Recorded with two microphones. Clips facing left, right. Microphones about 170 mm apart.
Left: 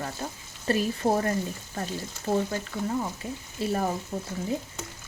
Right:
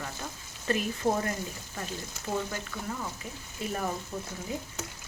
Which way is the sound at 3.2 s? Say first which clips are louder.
Left 6 dB; 35° left (ahead or behind).